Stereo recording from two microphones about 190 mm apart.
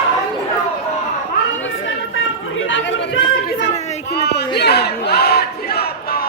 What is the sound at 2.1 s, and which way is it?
Chatter, 85° left.